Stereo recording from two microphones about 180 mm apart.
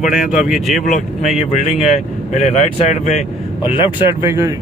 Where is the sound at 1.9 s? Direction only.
40° left (ahead or behind).